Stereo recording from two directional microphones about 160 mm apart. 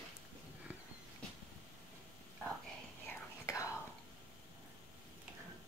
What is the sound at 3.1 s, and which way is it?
Whispering, 20° left (ahead or behind).